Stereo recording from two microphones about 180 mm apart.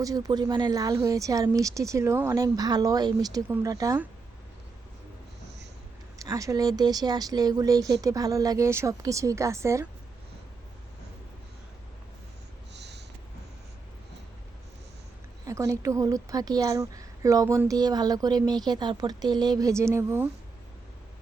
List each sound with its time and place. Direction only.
0.0 s a woman's voice: 20° right (ahead or behind)
6.1 s a woman's voice: 20° right (ahead or behind)
12.7 s snort: 70° right (ahead or behind)
15.4 s a woman's voice: 15° right (ahead or behind)